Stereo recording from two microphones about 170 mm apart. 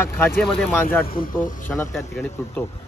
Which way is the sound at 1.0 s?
60° left (ahead or behind).